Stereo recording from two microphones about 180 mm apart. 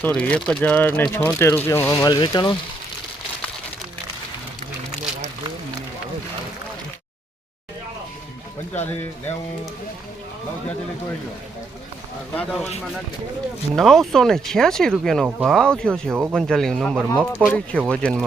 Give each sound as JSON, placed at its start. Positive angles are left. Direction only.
{"t": 0.0, "sound": "speech", "side_deg": 5}
{"t": 2.0, "sound": "speech", "side_deg": 25}
{"t": 12.3, "sound": "speech", "side_deg": 5}
{"t": 13.7, "sound": "speech", "side_deg": 0}